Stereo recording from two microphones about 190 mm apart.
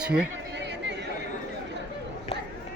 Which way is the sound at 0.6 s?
65° right (ahead or behind).